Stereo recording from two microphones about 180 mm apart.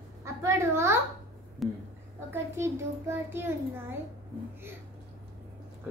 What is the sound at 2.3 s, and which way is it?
A child's voice, 15° right (ahead or behind).